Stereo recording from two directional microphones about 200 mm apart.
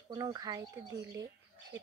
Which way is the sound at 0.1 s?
20° right (ahead or behind).